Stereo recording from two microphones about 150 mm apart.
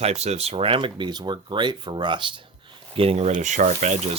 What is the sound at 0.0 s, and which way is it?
Speech, 45° right (ahead or behind).